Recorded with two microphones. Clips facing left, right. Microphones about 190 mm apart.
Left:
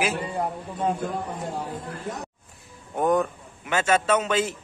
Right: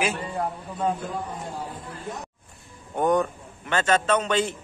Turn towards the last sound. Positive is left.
turn(degrees=5)  # may be behind; listen again after turning